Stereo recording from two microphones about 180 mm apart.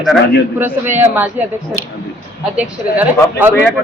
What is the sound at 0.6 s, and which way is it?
A woman's voice, 10° right (ahead or behind).